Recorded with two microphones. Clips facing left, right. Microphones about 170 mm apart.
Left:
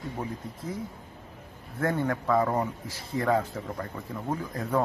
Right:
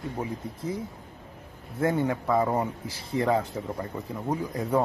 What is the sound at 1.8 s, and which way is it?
Speech, 15° right (ahead or behind).